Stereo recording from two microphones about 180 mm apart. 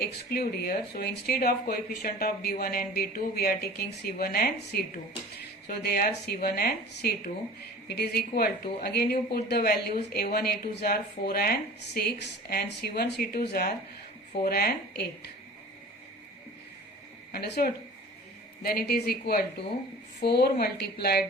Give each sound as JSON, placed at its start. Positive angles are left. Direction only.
{"t": 0.0, "sound": "speech", "side_deg": 60}
{"t": 17.3, "sound": "speech", "side_deg": 65}